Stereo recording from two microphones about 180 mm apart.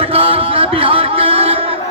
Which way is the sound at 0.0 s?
30° right (ahead or behind).